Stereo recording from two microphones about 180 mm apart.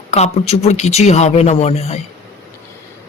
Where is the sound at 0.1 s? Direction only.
35° left (ahead or behind).